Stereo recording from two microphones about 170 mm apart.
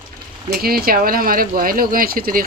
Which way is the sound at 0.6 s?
60° right (ahead or behind).